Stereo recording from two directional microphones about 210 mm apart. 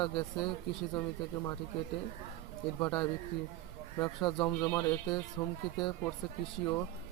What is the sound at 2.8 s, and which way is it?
A man's voice, 20° left (ahead or behind).